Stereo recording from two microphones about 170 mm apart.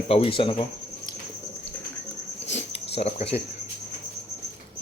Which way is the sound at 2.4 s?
40° left (ahead or behind).